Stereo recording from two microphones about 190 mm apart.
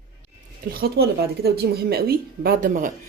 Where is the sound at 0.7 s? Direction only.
55° right (ahead or behind).